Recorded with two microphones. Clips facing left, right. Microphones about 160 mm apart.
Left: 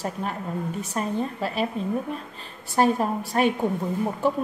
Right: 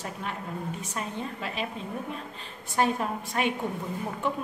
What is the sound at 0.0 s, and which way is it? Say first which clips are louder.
A woman's voice: left 6 dB; 40° left (ahead or behind).